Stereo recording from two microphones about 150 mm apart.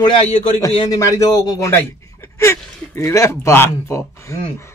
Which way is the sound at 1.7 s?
20° left (ahead or behind).